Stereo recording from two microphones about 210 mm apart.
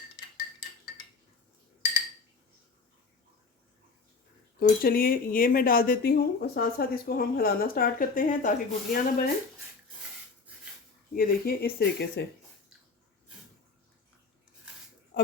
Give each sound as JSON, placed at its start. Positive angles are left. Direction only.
{"t": 4.8, "sound": "speech", "side_deg": 45}
{"t": 11.1, "sound": "speech", "side_deg": 45}